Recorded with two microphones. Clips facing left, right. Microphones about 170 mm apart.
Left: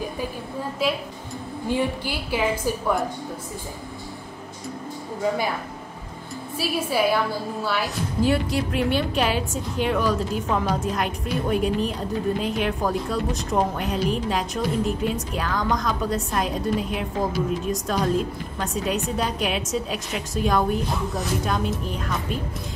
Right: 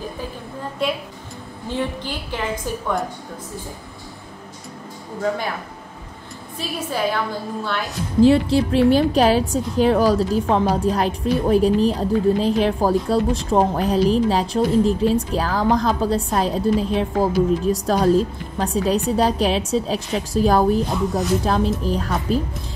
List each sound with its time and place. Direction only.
0.8 s a woman's voice: 5° left (ahead or behind)
6.6 s a woman's voice: 10° left (ahead or behind)
8.2 s a woman's voice: 30° right (ahead or behind)
21.8 s a woman's voice: 35° right (ahead or behind)